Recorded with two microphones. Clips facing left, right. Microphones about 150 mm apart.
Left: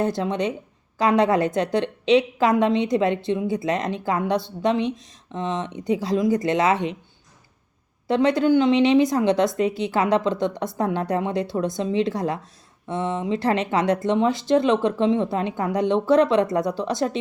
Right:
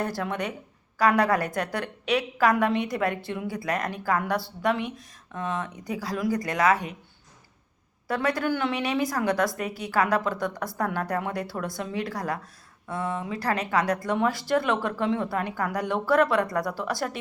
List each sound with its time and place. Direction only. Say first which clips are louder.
0.0 s a woman's voice: left 6 dB; 20° left (ahead or behind)
8.0 s a woman's voice: left 7 dB; 20° left (ahead or behind)